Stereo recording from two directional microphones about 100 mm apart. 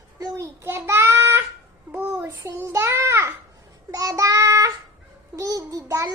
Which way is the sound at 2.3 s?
30° right (ahead or behind).